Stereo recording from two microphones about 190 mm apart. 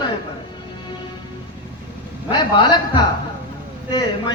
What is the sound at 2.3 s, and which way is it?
A man's voice, 25° left (ahead or behind).